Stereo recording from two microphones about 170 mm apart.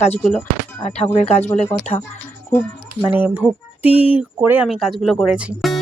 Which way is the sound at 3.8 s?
35° left (ahead or behind).